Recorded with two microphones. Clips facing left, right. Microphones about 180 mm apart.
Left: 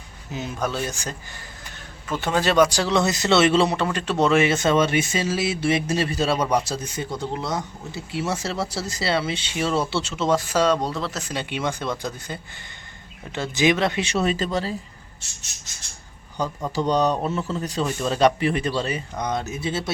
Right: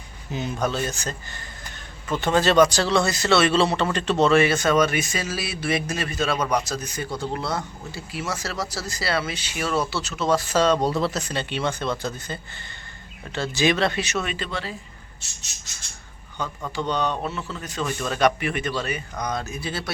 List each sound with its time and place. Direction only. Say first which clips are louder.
0.3 s speech: right 1 dB; 5° left (ahead or behind)
10.8 s speech: right 4 dB; 5° right (ahead or behind)
11.3 s speech: even; 10° left (ahead or behind)
14.0 s speech: left 5 dB; 30° left (ahead or behind)
16.7 s speech: left 4 dB; 40° left (ahead or behind); by 19.9 s 20° left (ahead or behind)